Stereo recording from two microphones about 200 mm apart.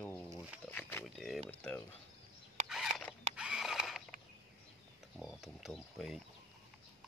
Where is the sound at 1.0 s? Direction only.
Centre (ahead or behind).